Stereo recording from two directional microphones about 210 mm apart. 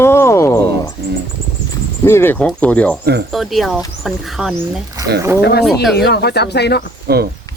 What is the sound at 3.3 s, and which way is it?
Speech, centre (ahead or behind).